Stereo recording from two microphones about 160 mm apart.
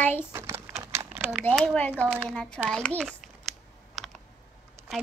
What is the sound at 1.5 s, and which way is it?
Child singing, 5° left (ahead or behind).